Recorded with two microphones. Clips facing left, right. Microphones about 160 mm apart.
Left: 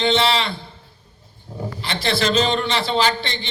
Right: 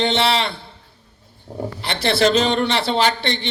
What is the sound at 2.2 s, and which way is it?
Speech, 60° right (ahead or behind).